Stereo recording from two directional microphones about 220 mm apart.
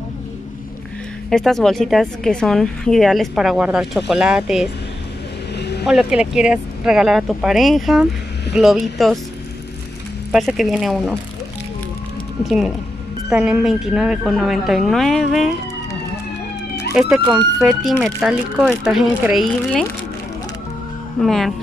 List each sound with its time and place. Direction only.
1.3 s speech: centre (ahead or behind)
5.6 s vehicle: 50° left (ahead or behind)
5.9 s speech: 5° right (ahead or behind)
10.3 s speech: centre (ahead or behind)
12.4 s speech: centre (ahead or behind)
16.9 s speech: centre (ahead or behind)
21.2 s speech: centre (ahead or behind)